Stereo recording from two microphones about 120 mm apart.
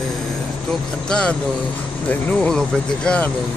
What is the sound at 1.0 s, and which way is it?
Speech, 10° left (ahead or behind).